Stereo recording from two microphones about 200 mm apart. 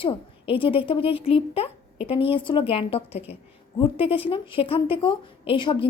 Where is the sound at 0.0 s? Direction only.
25° left (ahead or behind).